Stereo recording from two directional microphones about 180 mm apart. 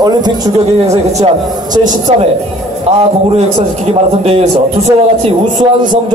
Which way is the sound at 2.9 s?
35° right (ahead or behind).